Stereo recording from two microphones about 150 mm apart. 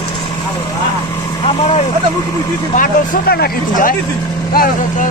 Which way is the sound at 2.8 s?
90° left.